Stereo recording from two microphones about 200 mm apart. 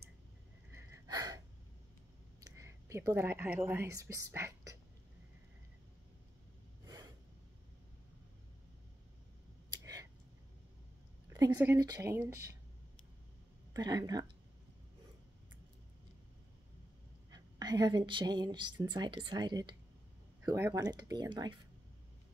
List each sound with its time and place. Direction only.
0.7 s gasp: 20° right (ahead or behind)
2.4 s speech: 15° right (ahead or behind)
11.2 s speech: 15° right (ahead or behind)
13.7 s a woman's voice: 20° right (ahead or behind)
17.3 s a woman's voice: 20° right (ahead or behind)